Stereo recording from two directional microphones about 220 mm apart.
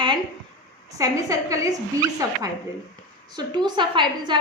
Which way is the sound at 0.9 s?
15° right (ahead or behind).